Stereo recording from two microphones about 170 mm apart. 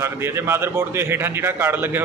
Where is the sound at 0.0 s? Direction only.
15° right (ahead or behind).